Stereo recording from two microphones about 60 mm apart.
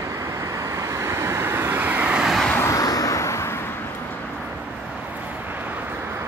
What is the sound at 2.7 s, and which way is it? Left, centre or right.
Vehicle, left.